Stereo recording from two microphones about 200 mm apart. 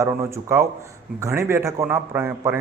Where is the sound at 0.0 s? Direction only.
15° right (ahead or behind).